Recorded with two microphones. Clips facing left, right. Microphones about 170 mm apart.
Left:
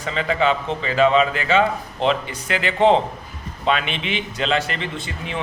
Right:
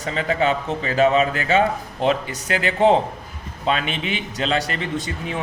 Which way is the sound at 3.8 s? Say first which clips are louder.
Even; 40° right (ahead or behind).